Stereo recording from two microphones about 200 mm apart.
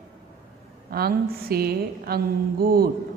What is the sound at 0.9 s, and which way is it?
A woman's voice, 50° right (ahead or behind).